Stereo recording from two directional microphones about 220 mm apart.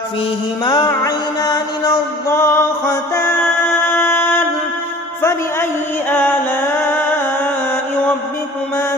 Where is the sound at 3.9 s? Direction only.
10° left (ahead or behind).